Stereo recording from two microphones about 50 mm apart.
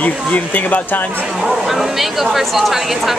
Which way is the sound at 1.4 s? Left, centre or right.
Centre.